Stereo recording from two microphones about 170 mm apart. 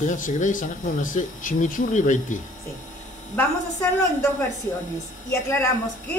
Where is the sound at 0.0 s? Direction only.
50° left (ahead or behind).